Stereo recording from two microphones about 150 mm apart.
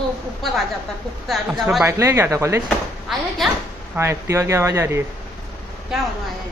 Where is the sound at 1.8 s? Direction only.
20° right (ahead or behind).